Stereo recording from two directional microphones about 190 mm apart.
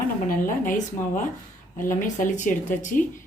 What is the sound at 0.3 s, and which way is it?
Speech, 45° left (ahead or behind).